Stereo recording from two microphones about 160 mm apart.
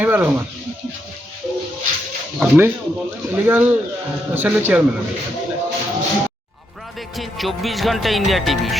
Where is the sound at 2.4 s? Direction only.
15° right (ahead or behind).